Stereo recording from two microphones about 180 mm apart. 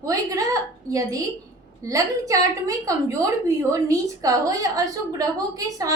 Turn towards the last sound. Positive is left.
turn(degrees=-20)  # may be behind; listen again after turning